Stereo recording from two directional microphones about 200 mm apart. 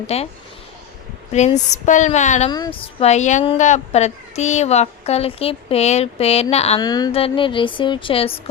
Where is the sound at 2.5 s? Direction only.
25° left (ahead or behind).